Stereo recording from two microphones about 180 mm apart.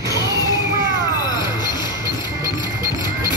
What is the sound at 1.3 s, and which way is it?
Music, 25° left (ahead or behind).